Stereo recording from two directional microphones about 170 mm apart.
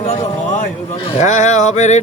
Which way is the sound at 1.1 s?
45° left (ahead or behind).